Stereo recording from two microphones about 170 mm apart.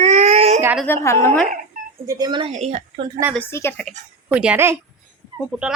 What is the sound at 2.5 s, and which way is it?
Speech, 40° right (ahead or behind).